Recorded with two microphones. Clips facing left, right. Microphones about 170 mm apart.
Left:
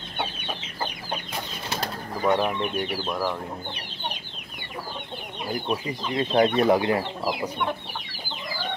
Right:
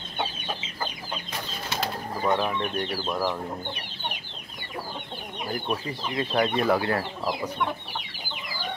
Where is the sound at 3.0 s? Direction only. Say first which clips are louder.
Right 2 dB; 5° right (ahead or behind).